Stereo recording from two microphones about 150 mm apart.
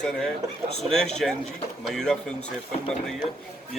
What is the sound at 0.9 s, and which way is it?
Speech, 5° left (ahead or behind).